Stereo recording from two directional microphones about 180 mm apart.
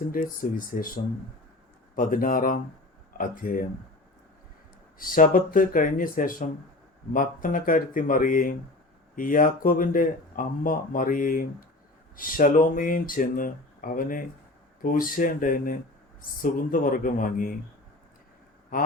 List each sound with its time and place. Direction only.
0.1 s speech: 50° left (ahead or behind)
2.0 s speech: 50° left (ahead or behind)
4.9 s speech: 50° left (ahead or behind)